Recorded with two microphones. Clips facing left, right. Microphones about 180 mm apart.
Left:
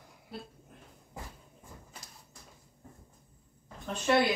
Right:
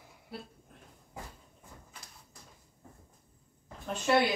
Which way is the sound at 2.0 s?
40° left (ahead or behind).